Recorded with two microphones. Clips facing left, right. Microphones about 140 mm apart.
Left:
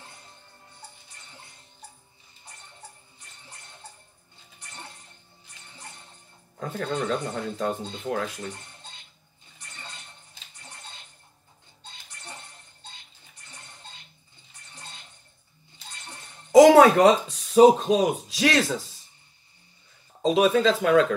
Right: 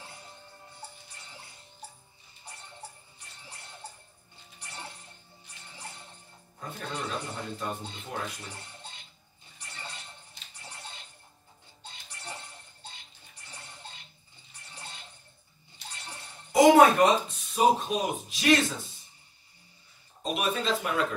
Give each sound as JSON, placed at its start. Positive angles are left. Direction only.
{"t": 6.6, "sound": "speech", "side_deg": 90}
{"t": 16.5, "sound": "a sound", "side_deg": 90}
{"t": 20.2, "sound": "speech", "side_deg": 90}